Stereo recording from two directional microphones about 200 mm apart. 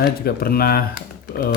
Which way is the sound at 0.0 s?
50° left (ahead or behind).